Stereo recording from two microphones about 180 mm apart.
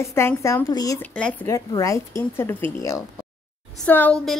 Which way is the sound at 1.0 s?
5° left (ahead or behind).